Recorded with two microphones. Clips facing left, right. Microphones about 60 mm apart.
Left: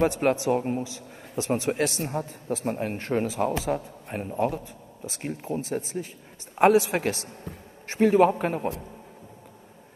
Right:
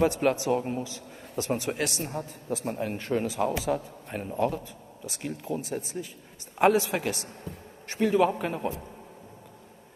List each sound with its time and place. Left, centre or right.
0.0 s a man's voice: left
2.0 s a man's voice: left
7.4 s a man's voice: left